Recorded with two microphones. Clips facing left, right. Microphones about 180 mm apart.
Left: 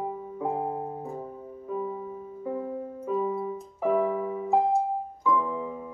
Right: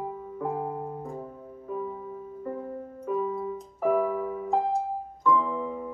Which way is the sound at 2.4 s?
5° left (ahead or behind).